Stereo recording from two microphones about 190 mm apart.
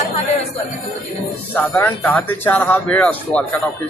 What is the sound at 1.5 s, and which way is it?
Speech, 10° left (ahead or behind).